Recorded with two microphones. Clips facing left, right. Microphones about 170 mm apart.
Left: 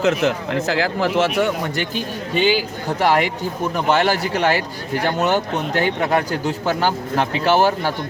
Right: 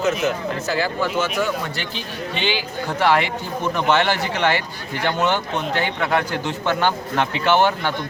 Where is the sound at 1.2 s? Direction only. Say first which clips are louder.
Left 5 dB; 65° left (ahead or behind); by 2.6 s 45° left (ahead or behind).